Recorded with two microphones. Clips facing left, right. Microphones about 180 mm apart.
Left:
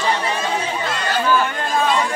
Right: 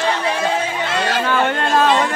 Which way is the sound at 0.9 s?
75° right (ahead or behind).